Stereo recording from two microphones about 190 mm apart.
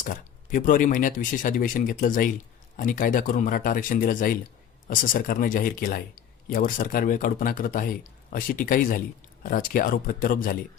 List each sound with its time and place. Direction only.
0.0 s speech: 45° left (ahead or behind)